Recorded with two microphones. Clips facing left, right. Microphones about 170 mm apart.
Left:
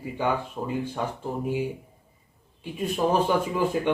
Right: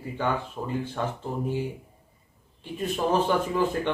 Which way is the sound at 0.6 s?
15° left (ahead or behind).